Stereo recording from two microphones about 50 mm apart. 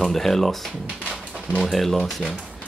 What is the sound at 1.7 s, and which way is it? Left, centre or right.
Speech, centre.